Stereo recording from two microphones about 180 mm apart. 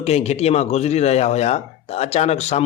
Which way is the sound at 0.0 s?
35° left (ahead or behind).